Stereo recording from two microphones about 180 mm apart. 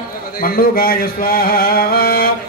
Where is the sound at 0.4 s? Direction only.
55° left (ahead or behind).